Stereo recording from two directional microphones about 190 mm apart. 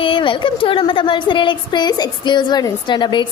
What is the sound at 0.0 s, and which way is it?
A woman's voice, 25° left (ahead or behind).